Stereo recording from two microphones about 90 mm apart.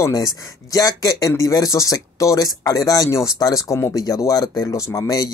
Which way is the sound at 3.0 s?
30° left (ahead or behind).